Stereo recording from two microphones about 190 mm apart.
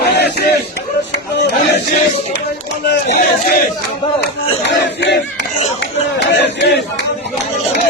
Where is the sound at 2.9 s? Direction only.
55° left (ahead or behind).